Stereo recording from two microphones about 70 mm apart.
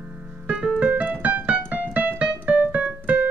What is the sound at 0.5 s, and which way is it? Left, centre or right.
Keyboard, centre.